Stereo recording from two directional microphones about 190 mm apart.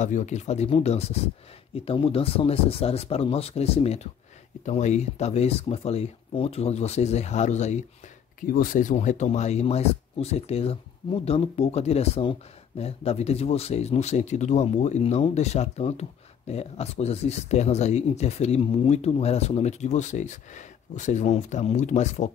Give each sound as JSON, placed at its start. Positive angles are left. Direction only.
{"t": 0.0, "sound": "speech", "side_deg": 40}
{"t": 8.4, "sound": "speech", "side_deg": 45}